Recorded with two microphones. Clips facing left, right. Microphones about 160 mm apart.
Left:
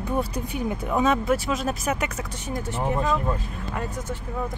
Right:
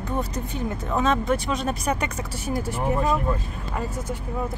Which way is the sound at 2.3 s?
10° right (ahead or behind).